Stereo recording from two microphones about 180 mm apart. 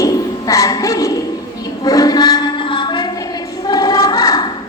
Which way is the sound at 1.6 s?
20° left (ahead or behind).